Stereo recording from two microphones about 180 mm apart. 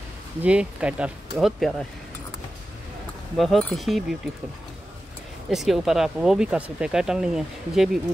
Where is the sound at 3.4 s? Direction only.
Centre (ahead or behind).